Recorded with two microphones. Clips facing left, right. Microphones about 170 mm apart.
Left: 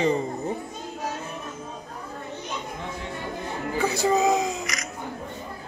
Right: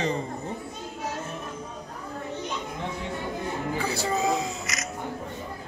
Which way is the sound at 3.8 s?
20° left (ahead or behind).